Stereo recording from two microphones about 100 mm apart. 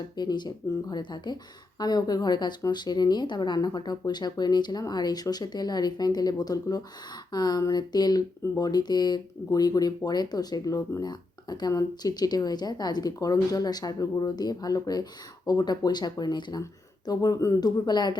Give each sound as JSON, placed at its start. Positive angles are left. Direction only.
{"t": 0.2, "sound": "speech", "side_deg": 45}